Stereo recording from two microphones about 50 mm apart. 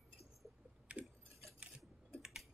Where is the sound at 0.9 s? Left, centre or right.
Right.